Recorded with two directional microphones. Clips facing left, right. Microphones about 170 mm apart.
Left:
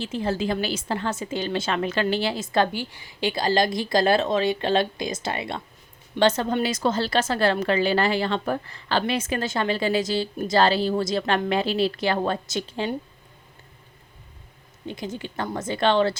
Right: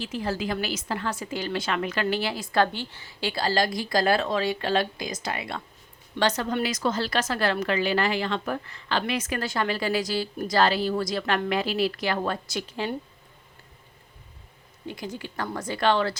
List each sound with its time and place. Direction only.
0.0 s a woman's voice: 25° left (ahead or behind)
14.8 s a woman's voice: 20° left (ahead or behind)